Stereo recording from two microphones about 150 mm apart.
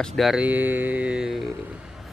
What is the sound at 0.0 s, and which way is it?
Speech, centre (ahead or behind).